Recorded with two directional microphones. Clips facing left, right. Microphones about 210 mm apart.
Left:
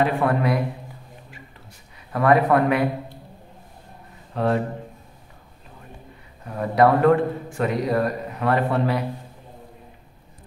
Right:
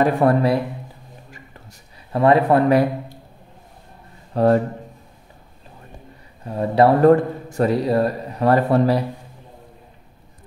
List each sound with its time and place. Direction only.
0.0 s a man's voice: 35° right (ahead or behind)
2.1 s speech: 25° right (ahead or behind)
4.3 s a man's voice: 40° right (ahead or behind)
6.4 s a man's voice: 30° right (ahead or behind)